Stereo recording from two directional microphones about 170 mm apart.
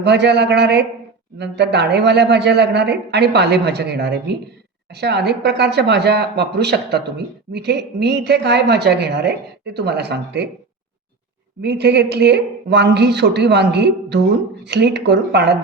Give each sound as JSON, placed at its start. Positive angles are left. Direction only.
{"t": 0.0, "sound": "a woman's voice", "side_deg": -80}
{"t": 11.6, "sound": "a woman's voice", "side_deg": -75}